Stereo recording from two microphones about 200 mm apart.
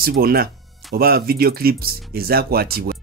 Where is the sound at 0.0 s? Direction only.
50° right (ahead or behind).